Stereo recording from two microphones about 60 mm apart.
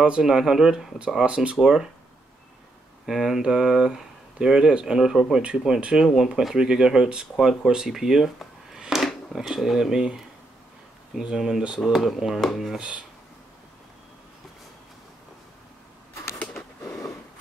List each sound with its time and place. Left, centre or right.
0.0 s speech: centre
3.1 s speech: centre
12.7 s speech: centre
16.8 s a sound: left